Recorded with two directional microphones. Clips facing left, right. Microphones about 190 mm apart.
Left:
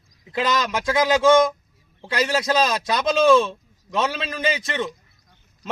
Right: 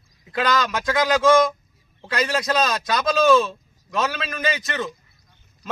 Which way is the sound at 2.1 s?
30° left (ahead or behind).